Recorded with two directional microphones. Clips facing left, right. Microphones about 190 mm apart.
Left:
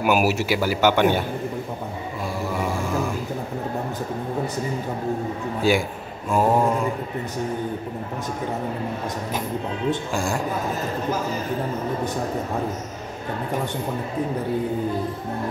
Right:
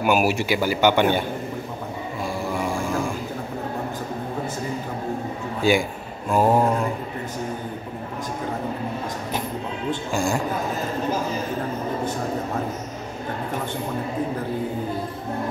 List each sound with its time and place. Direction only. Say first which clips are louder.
0.0 s a man's voice: even; 5° left (ahead or behind)
5.6 s a man's voice: right 1 dB; centre (ahead or behind)
10.1 s a man's voice: right 2 dB; centre (ahead or behind)